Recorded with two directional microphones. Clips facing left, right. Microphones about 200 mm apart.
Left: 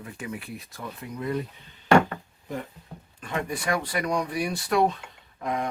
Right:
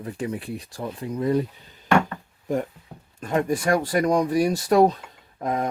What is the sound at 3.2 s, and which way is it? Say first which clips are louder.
Speech: right 8 dB; 45° right (ahead or behind).